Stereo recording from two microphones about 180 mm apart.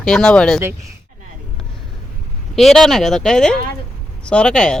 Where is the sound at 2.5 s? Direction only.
Centre (ahead or behind).